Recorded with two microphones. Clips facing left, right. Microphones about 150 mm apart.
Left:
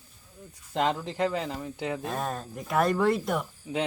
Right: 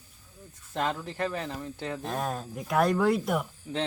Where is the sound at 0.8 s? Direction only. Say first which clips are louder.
Left 3 dB; 20° left (ahead or behind).